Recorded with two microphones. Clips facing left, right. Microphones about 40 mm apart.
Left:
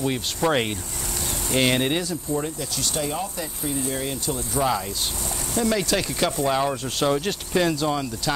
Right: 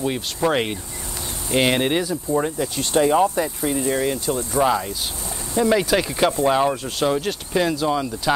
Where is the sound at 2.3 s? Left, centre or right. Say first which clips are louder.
Right 5 dB; right.